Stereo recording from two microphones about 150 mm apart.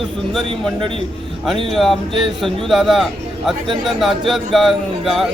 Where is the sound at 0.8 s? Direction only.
35° right (ahead or behind).